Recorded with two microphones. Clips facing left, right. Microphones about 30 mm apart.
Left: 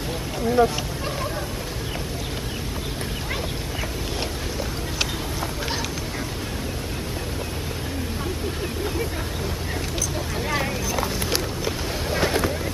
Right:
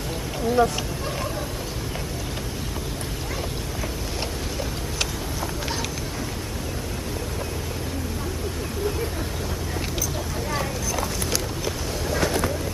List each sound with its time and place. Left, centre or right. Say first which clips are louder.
0.4 s speech: left 1 dB; centre
4.2 s boat: even; centre
10.5 s music: left 2 dB; left